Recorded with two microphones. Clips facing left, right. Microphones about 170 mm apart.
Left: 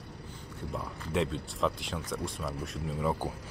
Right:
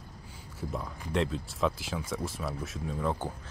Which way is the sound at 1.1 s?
Centre (ahead or behind).